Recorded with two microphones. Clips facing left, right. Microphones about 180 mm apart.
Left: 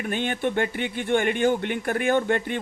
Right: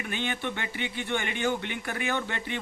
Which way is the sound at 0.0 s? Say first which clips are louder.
Left 6 dB; 50° left (ahead or behind).